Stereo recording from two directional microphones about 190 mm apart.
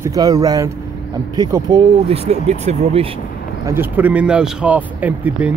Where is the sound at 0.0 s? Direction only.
20° right (ahead or behind).